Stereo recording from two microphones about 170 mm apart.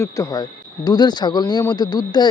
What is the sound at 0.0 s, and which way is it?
Speech, 20° left (ahead or behind).